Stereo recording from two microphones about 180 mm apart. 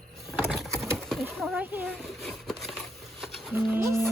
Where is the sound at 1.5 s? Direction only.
10° right (ahead or behind).